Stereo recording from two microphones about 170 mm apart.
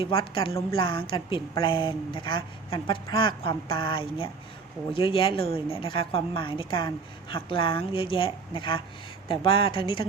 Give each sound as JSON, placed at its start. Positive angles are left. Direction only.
{"t": 0.0, "sound": "a woman's voice", "side_deg": 30}